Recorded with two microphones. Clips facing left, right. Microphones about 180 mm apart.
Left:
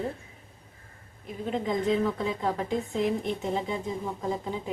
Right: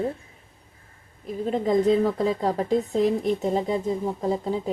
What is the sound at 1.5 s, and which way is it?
A woman's voice, 40° right (ahead or behind).